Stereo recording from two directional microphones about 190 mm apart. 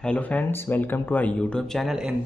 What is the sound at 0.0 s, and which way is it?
Speech, 5° left (ahead or behind).